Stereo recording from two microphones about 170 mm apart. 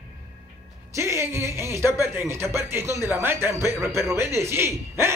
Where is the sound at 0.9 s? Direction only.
15° right (ahead or behind).